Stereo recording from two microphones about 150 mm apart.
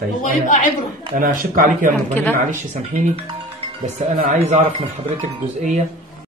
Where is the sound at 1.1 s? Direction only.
65° right (ahead or behind).